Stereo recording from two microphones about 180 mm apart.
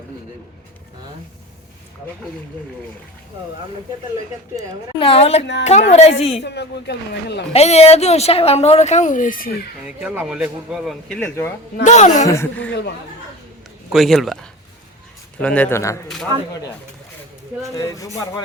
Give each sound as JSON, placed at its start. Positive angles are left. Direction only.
{"t": 4.9, "sound": "speech", "side_deg": 30}
{"t": 6.4, "sound": "speech", "side_deg": 70}
{"t": 7.5, "sound": "speech", "side_deg": 35}
{"t": 9.8, "sound": "speech", "side_deg": -5}
{"t": 11.1, "sound": "speech", "side_deg": 15}
{"t": 11.8, "sound": "speech", "side_deg": 40}
{"t": 12.3, "sound": "speech", "side_deg": 10}
{"t": 13.9, "sound": "speech", "side_deg": 0}
{"t": 15.4, "sound": "speech", "side_deg": 10}
{"t": 16.3, "sound": "speech", "side_deg": -25}
{"t": 17.7, "sound": "speech", "side_deg": 20}